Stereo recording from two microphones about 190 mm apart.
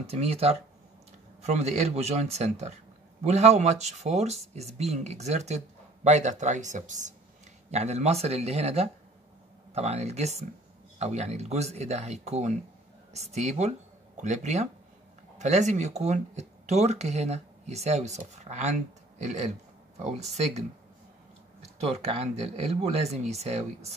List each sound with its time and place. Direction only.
0.0 s speech: 30° right (ahead or behind)
21.7 s speech: 35° right (ahead or behind)